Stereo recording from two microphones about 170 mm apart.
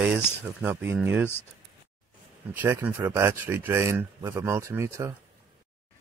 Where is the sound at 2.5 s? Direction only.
15° right (ahead or behind).